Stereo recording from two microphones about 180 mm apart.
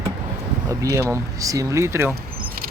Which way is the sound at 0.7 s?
20° right (ahead or behind).